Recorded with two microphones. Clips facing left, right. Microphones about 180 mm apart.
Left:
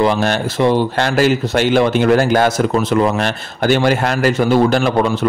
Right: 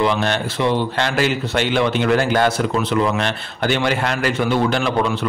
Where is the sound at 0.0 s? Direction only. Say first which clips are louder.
Left 4 dB; 40° left (ahead or behind).